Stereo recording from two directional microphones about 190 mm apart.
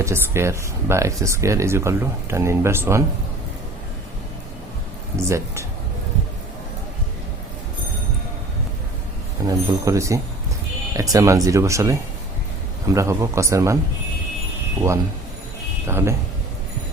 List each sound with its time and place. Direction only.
0.0 s speech: 15° right (ahead or behind)
5.1 s speech: 15° right (ahead or behind)
9.5 s speech: 15° right (ahead or behind)
15.9 s speech: 10° right (ahead or behind)